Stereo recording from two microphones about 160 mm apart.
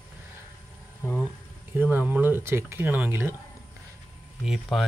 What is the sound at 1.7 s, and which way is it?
Speech, 10° right (ahead or behind).